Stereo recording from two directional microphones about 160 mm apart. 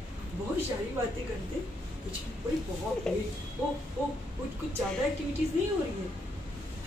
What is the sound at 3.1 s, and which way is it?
Speech, 5° left (ahead or behind).